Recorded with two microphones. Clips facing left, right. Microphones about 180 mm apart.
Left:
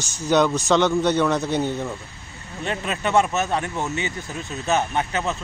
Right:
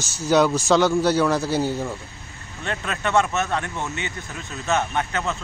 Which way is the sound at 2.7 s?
15° left (ahead or behind).